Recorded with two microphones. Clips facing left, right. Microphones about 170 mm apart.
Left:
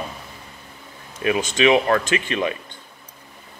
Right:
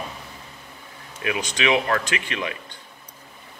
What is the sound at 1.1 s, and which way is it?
Speech, 35° left (ahead or behind).